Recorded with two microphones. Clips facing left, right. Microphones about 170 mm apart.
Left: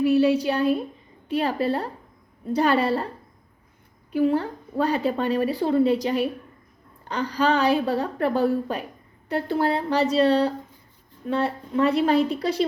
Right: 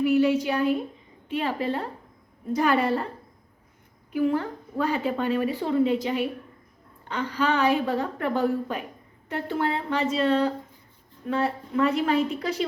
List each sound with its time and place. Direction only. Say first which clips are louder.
0.0 s a woman's voice: left 2 dB; 35° left (ahead or behind)
4.1 s a woman's voice: left 3 dB; 35° left (ahead or behind)